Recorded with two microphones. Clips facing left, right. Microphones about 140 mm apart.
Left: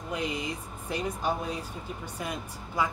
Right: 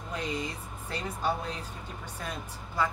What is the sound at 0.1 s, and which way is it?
Speech, 10° left (ahead or behind).